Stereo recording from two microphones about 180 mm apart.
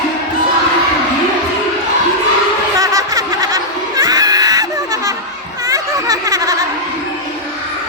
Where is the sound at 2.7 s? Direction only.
20° right (ahead or behind).